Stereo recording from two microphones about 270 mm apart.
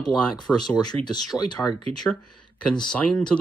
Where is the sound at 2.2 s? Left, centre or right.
Left.